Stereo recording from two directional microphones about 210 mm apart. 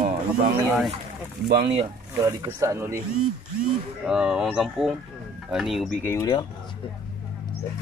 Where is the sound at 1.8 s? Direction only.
15° right (ahead or behind).